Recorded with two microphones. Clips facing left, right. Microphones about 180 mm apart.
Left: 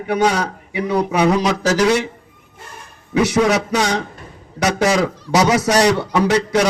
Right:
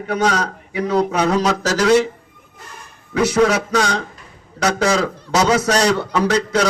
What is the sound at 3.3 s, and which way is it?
A man's voice, 15° left (ahead or behind).